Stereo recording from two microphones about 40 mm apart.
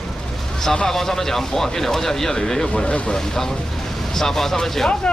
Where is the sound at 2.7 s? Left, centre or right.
Left.